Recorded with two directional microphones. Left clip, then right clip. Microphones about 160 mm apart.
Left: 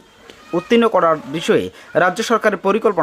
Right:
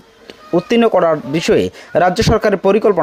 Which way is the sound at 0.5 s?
30° right (ahead or behind).